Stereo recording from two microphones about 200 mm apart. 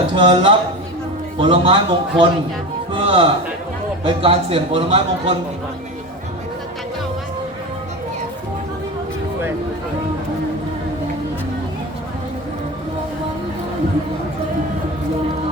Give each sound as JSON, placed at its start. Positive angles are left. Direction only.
{"t": 0.1, "sound": "a man's voice", "side_deg": -25}
{"t": 2.9, "sound": "music", "side_deg": -25}
{"t": 4.0, "sound": "a man's voice", "side_deg": -30}